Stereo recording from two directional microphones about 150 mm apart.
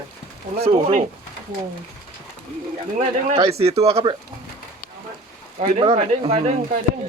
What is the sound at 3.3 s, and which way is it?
Speech, 40° right (ahead or behind).